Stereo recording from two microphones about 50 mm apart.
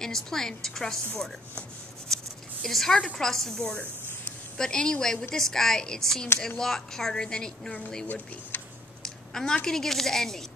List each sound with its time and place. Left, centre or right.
0.0 s a woman's voice: centre
2.1 s a sound: centre
2.6 s a woman's voice: centre
8.1 s speech: left
9.0 s speech: centre